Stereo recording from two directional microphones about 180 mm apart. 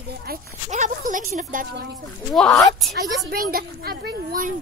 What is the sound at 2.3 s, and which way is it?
Speech, 5° left (ahead or behind).